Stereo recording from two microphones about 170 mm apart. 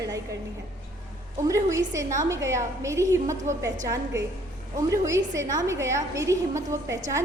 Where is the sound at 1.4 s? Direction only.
20° right (ahead or behind).